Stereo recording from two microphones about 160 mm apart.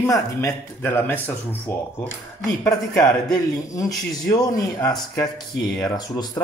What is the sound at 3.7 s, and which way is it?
Speech, 20° left (ahead or behind).